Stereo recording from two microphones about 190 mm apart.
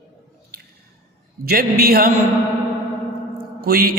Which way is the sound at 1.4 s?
55° right (ahead or behind).